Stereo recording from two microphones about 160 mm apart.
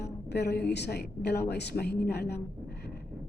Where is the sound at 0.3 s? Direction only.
90° left.